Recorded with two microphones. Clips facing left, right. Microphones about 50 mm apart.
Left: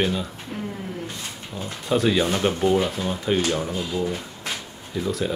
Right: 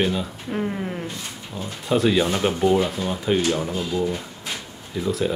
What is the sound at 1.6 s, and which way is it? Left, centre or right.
Speech, centre.